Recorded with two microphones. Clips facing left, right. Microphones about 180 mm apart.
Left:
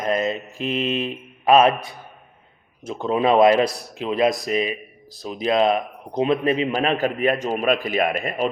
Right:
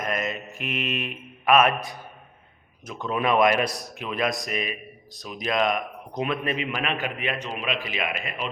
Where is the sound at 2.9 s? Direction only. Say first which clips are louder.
Left 6 dB; 30° left (ahead or behind).